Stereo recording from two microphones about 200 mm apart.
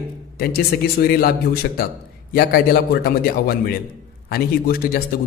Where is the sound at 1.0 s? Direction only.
50° left (ahead or behind).